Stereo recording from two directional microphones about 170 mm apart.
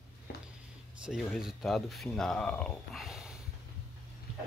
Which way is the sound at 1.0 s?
Centre (ahead or behind).